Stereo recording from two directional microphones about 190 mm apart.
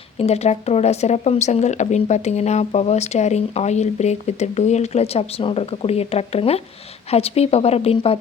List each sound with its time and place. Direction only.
0.2 s speech: 35° left (ahead or behind)